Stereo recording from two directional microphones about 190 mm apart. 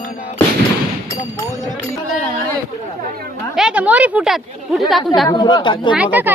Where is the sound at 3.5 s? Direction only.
5° right (ahead or behind).